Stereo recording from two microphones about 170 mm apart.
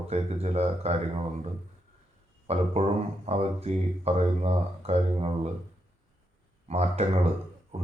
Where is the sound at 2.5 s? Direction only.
40° right (ahead or behind).